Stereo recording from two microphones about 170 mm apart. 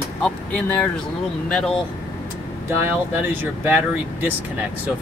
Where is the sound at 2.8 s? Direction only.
10° right (ahead or behind).